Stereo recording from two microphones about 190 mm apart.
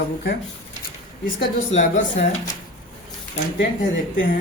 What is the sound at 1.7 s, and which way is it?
Speech, 35° left (ahead or behind).